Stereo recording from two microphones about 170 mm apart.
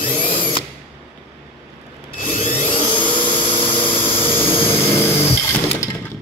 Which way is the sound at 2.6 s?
30° left (ahead or behind).